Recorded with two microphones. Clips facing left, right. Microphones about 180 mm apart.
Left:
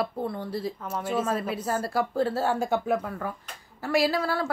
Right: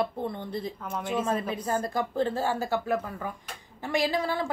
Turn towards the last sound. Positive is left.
turn(degrees=-20)  # may be behind; listen again after turning